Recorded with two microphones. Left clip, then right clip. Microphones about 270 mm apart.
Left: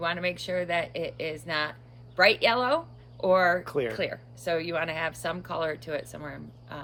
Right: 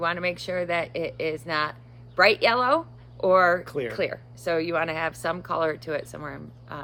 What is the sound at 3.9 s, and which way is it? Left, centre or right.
Speech, centre.